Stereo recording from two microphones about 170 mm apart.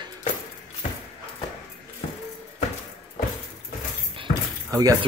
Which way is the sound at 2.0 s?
35° left (ahead or behind).